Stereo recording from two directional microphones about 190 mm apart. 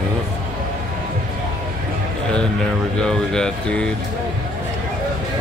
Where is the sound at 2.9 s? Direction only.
5° left (ahead or behind).